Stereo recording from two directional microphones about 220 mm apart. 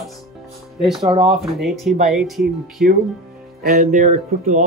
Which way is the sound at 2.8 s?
45° right (ahead or behind).